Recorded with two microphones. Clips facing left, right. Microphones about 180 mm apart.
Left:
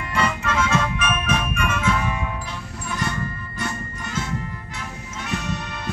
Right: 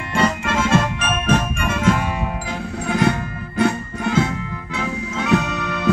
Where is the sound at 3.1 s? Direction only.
65° right (ahead or behind).